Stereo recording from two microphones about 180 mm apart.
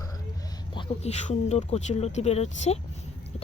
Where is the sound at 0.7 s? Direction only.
30° left (ahead or behind).